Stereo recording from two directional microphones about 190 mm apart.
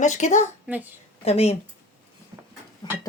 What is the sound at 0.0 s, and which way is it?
Speech, 40° left (ahead or behind).